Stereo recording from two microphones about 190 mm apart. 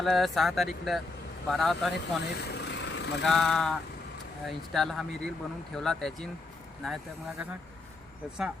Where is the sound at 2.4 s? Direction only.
65° left (ahead or behind).